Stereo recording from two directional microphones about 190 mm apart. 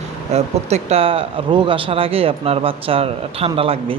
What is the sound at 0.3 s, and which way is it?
Speech, 35° right (ahead or behind).